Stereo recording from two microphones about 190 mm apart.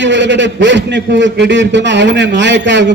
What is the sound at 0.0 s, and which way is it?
A man's voice, 70° right (ahead or behind).